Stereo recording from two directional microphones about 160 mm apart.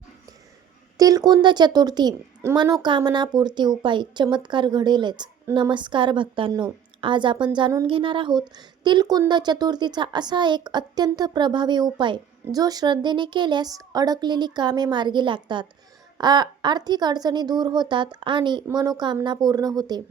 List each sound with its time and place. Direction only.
0.9 s a woman's voice: 25° right (ahead or behind)